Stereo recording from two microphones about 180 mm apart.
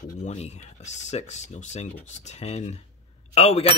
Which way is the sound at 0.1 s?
40° left (ahead or behind).